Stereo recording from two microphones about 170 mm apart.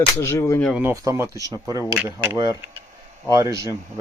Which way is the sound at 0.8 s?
15° right (ahead or behind).